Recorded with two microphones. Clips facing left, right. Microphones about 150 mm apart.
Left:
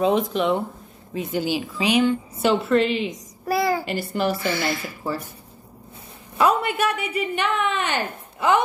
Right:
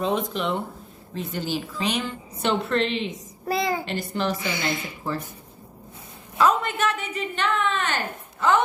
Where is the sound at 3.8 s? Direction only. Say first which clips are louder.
Left 3 dB; 5° left (ahead or behind).